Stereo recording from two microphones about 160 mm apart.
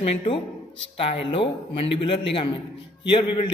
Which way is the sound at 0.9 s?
35° left (ahead or behind).